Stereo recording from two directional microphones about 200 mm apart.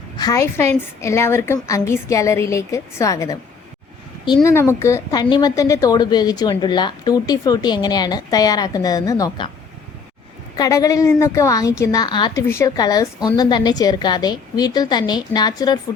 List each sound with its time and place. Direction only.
0.2 s a woman's voice: 15° left (ahead or behind)
4.4 s a woman's voice: 10° left (ahead or behind)
10.6 s a woman's voice: 15° left (ahead or behind)